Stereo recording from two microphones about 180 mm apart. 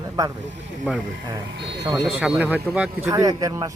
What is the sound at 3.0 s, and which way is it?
Speech, 20° right (ahead or behind).